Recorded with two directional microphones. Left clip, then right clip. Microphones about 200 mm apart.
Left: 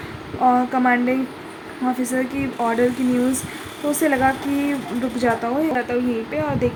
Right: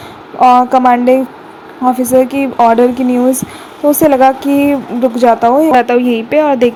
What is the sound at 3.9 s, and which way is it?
Speech, 25° right (ahead or behind).